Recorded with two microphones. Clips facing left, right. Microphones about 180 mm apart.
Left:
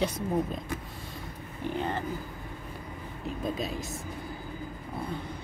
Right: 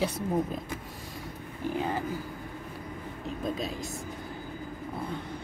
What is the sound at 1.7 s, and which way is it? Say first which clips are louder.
Speech: right 1 dB; 5° right (ahead or behind).